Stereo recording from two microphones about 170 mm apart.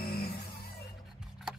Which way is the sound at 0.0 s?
70° left (ahead or behind).